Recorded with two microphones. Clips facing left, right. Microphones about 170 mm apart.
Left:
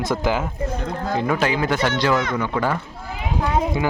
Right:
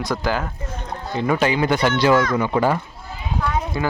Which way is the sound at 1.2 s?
Centre (ahead or behind).